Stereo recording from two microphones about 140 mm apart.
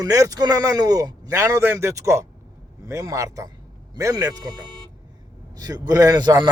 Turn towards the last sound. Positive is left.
turn(degrees=-30)  # may be behind; listen again after turning